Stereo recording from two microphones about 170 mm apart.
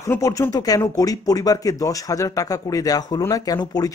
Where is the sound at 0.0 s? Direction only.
20° left (ahead or behind).